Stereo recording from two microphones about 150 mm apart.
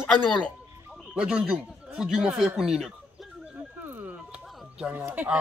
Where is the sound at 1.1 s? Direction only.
5° right (ahead or behind).